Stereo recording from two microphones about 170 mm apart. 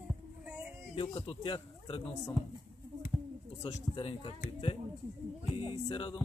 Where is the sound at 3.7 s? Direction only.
30° left (ahead or behind).